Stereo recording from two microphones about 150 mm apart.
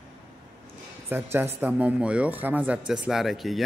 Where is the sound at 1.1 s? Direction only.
15° right (ahead or behind).